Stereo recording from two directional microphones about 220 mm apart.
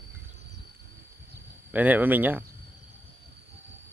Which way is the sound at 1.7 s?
10° right (ahead or behind).